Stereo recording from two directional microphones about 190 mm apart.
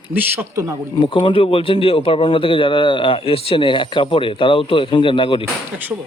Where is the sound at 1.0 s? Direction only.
25° left (ahead or behind).